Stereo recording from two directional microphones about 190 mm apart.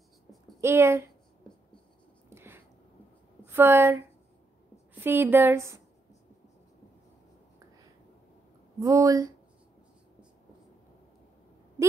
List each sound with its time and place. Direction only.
0.6 s a woman's voice: 15° right (ahead or behind)
2.2 s a sound: 10° right (ahead or behind)
3.4 s a woman's voice: 10° right (ahead or behind)
5.0 s a woman's voice: 10° right (ahead or behind)
8.7 s a woman's voice: 15° right (ahead or behind)